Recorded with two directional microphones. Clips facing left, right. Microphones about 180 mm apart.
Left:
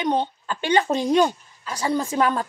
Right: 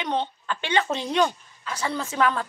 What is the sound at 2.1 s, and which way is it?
Speech, 40° left (ahead or behind).